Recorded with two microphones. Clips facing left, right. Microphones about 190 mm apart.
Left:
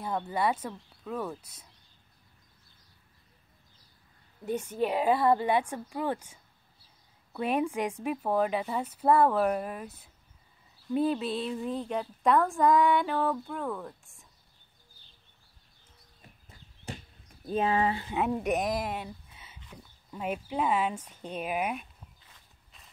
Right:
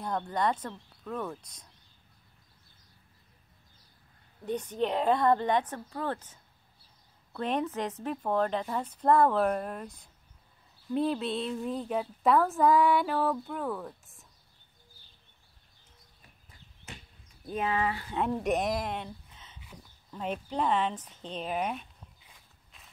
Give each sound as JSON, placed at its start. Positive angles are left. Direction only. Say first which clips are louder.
{"t": 0.0, "sound": "a woman's voice", "louder": "even", "side_deg": 5}
{"t": 4.5, "sound": "a woman's voice", "louder": "left 1 dB", "side_deg": 10}
{"t": 16.9, "sound": "a sound", "louder": "left 7 dB", "side_deg": 35}
{"t": 17.5, "sound": "speech", "louder": "left 3 dB", "side_deg": 30}
{"t": 18.1, "sound": "a woman's voice", "louder": "right 2 dB", "side_deg": 5}
{"t": 22.2, "sound": "walk", "louder": "even", "side_deg": 0}